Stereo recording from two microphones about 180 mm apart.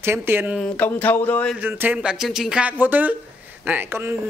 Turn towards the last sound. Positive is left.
turn(degrees=-15)  # may be behind; listen again after turning